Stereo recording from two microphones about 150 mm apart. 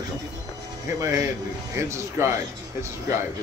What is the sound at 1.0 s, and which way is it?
Speech, 20° right (ahead or behind).